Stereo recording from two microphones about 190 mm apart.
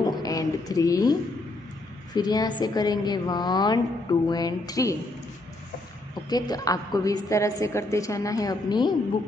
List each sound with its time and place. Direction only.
0.0 s a sound: 20° left (ahead or behind)
2.1 s a woman's voice: 20° left (ahead or behind)
6.2 s a woman's voice: 20° left (ahead or behind)